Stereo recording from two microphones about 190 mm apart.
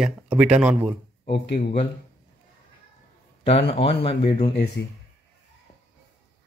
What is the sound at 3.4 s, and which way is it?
Speech, 30° left (ahead or behind).